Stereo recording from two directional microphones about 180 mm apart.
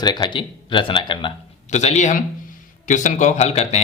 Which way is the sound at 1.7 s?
40° left (ahead or behind).